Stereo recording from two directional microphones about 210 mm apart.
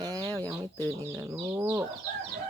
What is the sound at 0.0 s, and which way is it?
Chicken, 20° right (ahead or behind).